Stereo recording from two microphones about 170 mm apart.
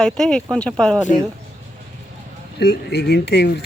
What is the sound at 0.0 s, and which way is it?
Speech, 5° left (ahead or behind).